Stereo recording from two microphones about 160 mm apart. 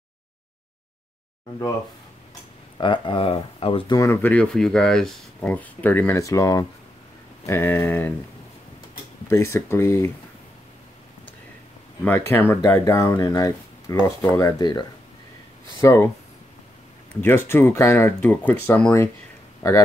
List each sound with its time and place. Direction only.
2.8 s speech: 30° left (ahead or behind); by 8.1 s 15° left (ahead or behind)
9.3 s speech: 15° left (ahead or behind)
12.0 s speech: 15° left (ahead or behind)
14.6 s speech: 30° left (ahead or behind)
17.2 s speech: 15° left (ahead or behind)